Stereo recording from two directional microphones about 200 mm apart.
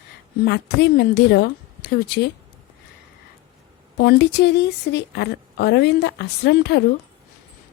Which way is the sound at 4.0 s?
55° left (ahead or behind).